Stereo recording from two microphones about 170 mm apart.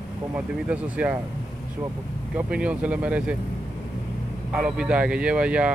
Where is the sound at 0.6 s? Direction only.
10° right (ahead or behind).